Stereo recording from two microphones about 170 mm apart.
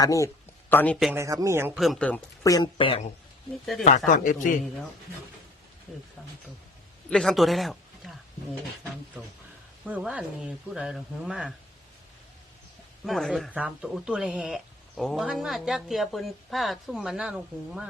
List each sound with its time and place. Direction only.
0.0 s a man's voice: 20° left (ahead or behind)
1.1 s speech: 20° right (ahead or behind)
1.7 s speech: centre (ahead or behind)
2.4 s speech: 20° left (ahead or behind)
3.8 s speech: 45° left (ahead or behind)
7.1 s speech: 5° left (ahead or behind)
9.8 s speech: 5° right (ahead or behind)
13.1 s speech: centre (ahead or behind)